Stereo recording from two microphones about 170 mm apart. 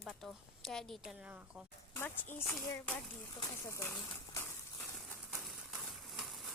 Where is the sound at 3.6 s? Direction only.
15° left (ahead or behind).